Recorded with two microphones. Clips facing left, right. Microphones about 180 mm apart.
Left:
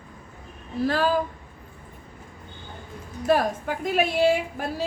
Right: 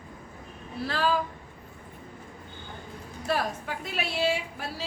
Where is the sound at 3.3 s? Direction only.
45° left (ahead or behind).